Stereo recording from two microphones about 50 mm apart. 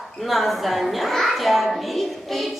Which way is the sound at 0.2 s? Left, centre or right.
Centre.